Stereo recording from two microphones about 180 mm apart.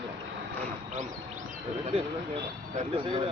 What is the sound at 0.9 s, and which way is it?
Speech, 40° right (ahead or behind).